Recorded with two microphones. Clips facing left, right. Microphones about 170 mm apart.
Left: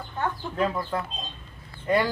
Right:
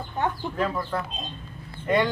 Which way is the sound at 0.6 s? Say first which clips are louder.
Left 2 dB; 15° left (ahead or behind).